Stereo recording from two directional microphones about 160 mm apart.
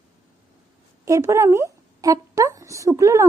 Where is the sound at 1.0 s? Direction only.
20° right (ahead or behind).